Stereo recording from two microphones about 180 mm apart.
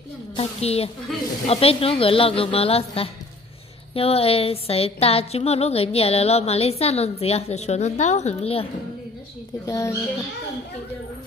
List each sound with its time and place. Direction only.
0.4 s a woman's voice: 35° left (ahead or behind)
9.7 s speech: 15° left (ahead or behind)